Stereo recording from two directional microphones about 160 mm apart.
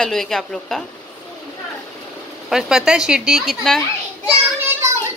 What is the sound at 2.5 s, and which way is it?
A woman's voice, 5° right (ahead or behind).